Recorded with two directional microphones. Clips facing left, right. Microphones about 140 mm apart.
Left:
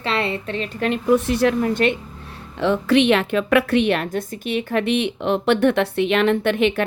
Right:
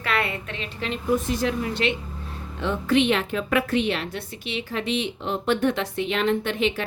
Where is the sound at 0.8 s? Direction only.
65° left (ahead or behind).